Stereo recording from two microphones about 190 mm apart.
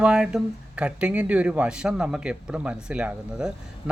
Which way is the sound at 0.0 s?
5° right (ahead or behind).